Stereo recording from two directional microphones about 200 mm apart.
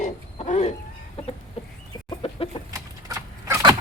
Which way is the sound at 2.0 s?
25° left (ahead or behind).